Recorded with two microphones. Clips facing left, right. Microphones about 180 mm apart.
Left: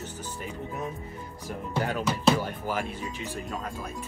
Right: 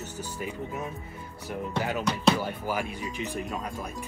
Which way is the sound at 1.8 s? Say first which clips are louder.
Left 1 dB; centre (ahead or behind).